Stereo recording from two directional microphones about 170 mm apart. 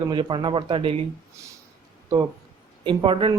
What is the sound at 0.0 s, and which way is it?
A man's voice, 25° right (ahead or behind).